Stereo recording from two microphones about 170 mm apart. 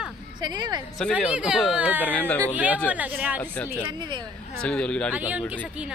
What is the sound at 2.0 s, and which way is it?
Speech, 10° left (ahead or behind).